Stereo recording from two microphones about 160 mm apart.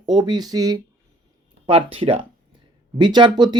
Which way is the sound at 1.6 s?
35° right (ahead or behind).